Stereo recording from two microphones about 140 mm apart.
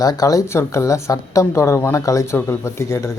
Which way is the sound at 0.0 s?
25° left (ahead or behind).